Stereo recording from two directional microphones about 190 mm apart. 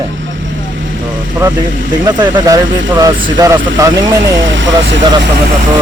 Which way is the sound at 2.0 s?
20° right (ahead or behind).